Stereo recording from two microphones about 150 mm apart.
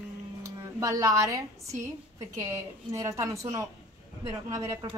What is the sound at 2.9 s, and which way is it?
Speech, 20° right (ahead or behind).